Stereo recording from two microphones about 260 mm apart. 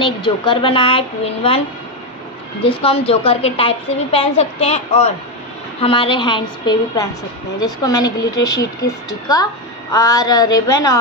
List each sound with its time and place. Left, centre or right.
0.0 s a woman's voice: centre
2.6 s a woman's voice: left